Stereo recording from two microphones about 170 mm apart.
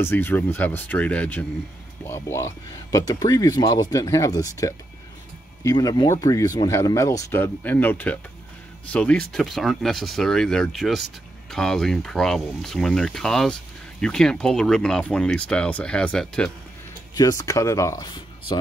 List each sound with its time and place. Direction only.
0.0 s speech: 10° left (ahead or behind)
17.1 s speech: 20° left (ahead or behind)